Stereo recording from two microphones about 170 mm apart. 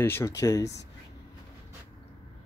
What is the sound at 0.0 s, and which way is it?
Speech, 15° left (ahead or behind).